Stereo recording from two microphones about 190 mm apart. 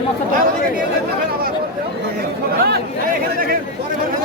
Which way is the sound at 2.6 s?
55° right (ahead or behind).